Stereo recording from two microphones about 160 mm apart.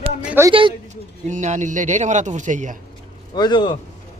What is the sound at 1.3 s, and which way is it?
A man's voice, 50° right (ahead or behind).